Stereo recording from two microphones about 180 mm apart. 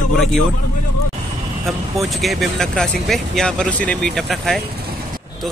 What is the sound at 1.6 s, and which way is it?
Speech, centre (ahead or behind).